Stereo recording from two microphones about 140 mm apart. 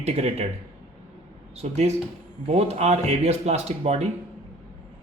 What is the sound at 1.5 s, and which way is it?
Speech, 50° right (ahead or behind).